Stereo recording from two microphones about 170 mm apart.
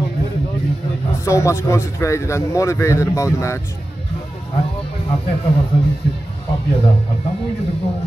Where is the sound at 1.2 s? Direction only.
15° left (ahead or behind).